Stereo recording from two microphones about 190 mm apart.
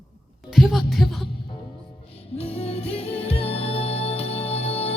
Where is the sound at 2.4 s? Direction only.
30° left (ahead or behind).